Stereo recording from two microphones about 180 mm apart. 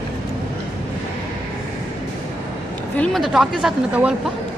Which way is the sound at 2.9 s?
5° left (ahead or behind).